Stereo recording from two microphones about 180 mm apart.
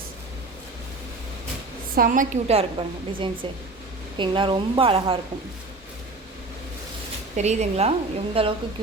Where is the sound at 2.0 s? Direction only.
50° right (ahead or behind); by 5.2 s 30° right (ahead or behind).